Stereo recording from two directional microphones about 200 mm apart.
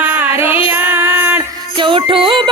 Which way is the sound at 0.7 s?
10° right (ahead or behind).